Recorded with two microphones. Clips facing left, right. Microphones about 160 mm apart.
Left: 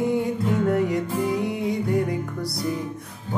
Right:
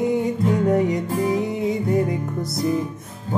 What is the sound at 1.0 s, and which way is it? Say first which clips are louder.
Music: right 3 dB; 45° right (ahead or behind).